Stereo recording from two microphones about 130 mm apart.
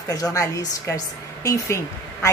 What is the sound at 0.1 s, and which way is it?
A woman's voice, 25° left (ahead or behind).